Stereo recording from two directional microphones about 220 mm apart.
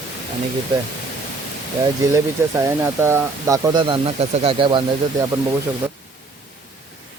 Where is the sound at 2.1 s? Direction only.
15° right (ahead or behind).